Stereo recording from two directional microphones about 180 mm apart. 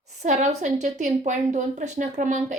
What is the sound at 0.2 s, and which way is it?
A woman's voice, 40° right (ahead or behind).